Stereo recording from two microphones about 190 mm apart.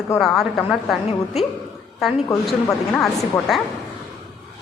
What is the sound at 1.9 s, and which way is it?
A woman's voice, centre (ahead or behind).